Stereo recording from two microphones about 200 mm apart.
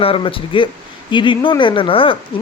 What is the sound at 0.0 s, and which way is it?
Speech, 25° left (ahead or behind).